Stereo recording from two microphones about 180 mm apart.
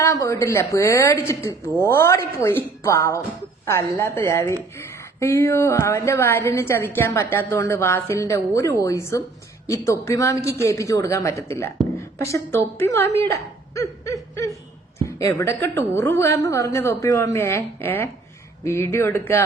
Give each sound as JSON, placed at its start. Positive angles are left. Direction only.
{"t": 0.0, "sound": "a woman's voice", "side_deg": 15}